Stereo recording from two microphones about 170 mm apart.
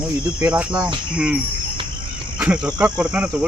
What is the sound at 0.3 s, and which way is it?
Speech, 5° right (ahead or behind).